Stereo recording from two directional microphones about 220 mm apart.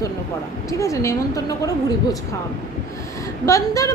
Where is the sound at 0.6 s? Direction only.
15° left (ahead or behind).